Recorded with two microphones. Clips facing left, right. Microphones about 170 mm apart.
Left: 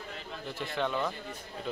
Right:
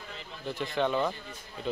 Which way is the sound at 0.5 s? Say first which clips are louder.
Right 4 dB; centre (ahead or behind).